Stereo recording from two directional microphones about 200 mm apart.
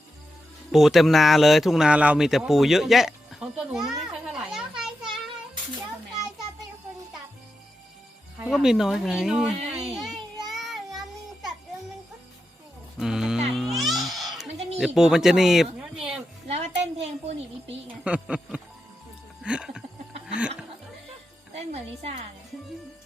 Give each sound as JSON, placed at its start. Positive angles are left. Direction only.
{"t": 0.7, "sound": "speech", "side_deg": 0}
{"t": 8.4, "sound": "speech", "side_deg": 0}
{"t": 9.8, "sound": "child singing", "side_deg": 0}
{"t": 13.0, "sound": "speech", "side_deg": -5}
{"t": 13.5, "sound": "music", "side_deg": 0}
{"t": 14.8, "sound": "speech", "side_deg": 0}
{"t": 16.5, "sound": "music", "side_deg": -30}
{"t": 18.0, "sound": "speech", "side_deg": -5}
{"t": 19.4, "sound": "a sound", "side_deg": -5}
{"t": 20.2, "sound": "speech", "side_deg": -5}
{"t": 21.7, "sound": "a woman's voice", "side_deg": -30}